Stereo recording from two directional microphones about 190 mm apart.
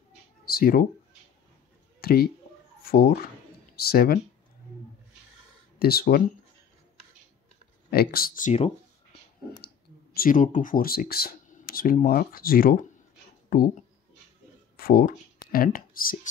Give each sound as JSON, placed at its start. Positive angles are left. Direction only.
{"t": 0.5, "sound": "speech", "side_deg": 50}
{"t": 2.0, "sound": "a sound", "side_deg": 55}
{"t": 2.8, "sound": "speech", "side_deg": 55}
{"t": 5.8, "sound": "speech", "side_deg": 55}
{"t": 7.9, "sound": "speech", "side_deg": 55}
{"t": 10.1, "sound": "speech", "side_deg": 45}
{"t": 14.8, "sound": "speech", "side_deg": 50}